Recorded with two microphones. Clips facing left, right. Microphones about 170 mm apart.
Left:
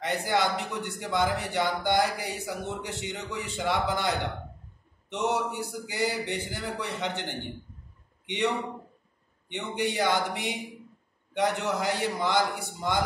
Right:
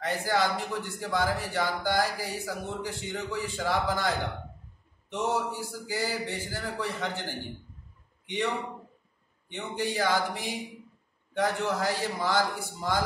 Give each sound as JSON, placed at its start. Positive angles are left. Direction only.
{"t": 0.0, "sound": "speech", "side_deg": 20}
{"t": 9.5, "sound": "speech", "side_deg": 20}